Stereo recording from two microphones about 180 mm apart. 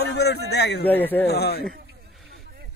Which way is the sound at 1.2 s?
60° left (ahead or behind).